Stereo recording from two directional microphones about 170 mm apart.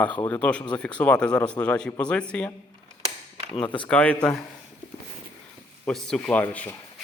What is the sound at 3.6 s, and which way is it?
Speech, 30° left (ahead or behind).